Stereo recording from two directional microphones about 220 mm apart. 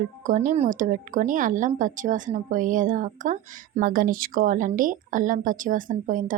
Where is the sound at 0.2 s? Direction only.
35° right (ahead or behind).